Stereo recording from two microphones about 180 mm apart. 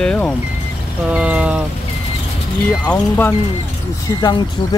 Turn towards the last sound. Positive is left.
turn(degrees=20)  # may be behind; listen again after turning